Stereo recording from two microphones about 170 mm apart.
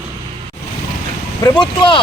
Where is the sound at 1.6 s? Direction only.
30° left (ahead or behind).